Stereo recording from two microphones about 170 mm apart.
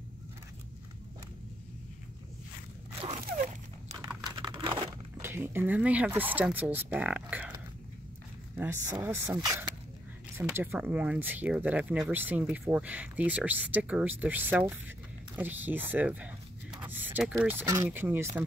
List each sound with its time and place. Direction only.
4.2 s crumpling: 25° right (ahead or behind)
5.2 s speech: 15° right (ahead or behind)
8.5 s speech: 10° right (ahead or behind)